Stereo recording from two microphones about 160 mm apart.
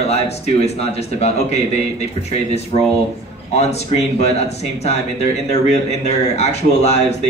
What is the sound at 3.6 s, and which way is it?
Speech, 45° left (ahead or behind).